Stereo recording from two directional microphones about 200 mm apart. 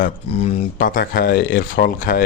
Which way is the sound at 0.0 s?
45° left (ahead or behind).